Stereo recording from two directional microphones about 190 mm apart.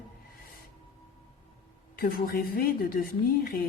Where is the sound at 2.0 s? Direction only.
50° left (ahead or behind).